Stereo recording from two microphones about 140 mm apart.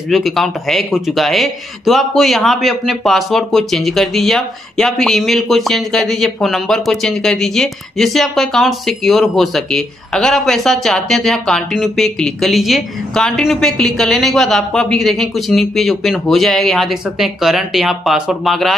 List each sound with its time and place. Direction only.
0.1 s speech: centre (ahead or behind)